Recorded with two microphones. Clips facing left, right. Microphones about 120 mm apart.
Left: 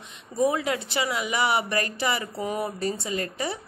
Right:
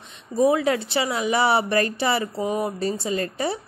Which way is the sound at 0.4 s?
30° right (ahead or behind).